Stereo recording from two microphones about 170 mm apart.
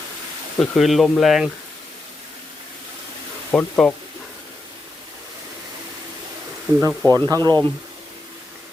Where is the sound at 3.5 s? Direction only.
5° left (ahead or behind).